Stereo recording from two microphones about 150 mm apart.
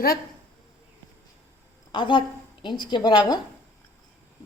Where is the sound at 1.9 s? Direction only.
35° left (ahead or behind).